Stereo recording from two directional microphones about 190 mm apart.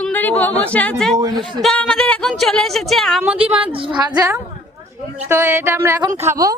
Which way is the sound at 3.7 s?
25° right (ahead or behind).